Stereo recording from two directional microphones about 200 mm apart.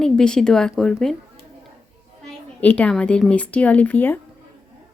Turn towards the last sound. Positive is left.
turn(degrees=10)  # may be behind; listen again after turning